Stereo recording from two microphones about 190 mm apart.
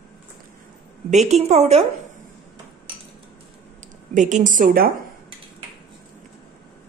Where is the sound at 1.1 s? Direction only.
35° right (ahead or behind).